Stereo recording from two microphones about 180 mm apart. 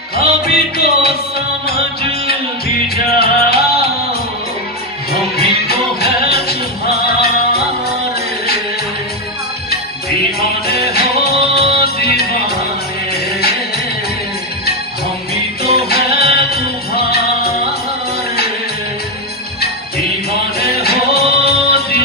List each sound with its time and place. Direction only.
0.2 s music: 60° left (ahead or behind)
3.2 s music: 60° left (ahead or behind)
5.1 s music: 60° left (ahead or behind)
10.7 s music: 60° left (ahead or behind)
15.6 s music: 60° left (ahead or behind)
20.5 s music: 60° left (ahead or behind)